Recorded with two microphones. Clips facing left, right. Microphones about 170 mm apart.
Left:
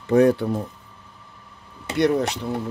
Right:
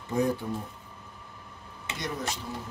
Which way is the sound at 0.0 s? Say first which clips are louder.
Left 11 dB; 70° left (ahead or behind).